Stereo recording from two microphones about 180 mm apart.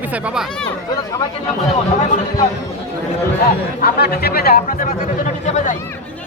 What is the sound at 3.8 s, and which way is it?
Speech, 60° left (ahead or behind).